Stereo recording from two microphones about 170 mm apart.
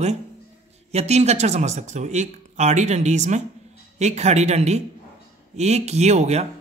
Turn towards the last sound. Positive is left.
turn(degrees=-40)  # may be behind; listen again after turning